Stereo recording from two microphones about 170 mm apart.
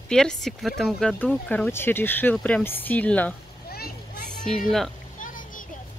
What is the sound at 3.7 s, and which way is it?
Vehicle, 65° left (ahead or behind).